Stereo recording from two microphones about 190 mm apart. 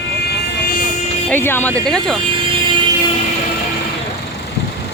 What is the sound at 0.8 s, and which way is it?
Vehicle, 40° left (ahead or behind).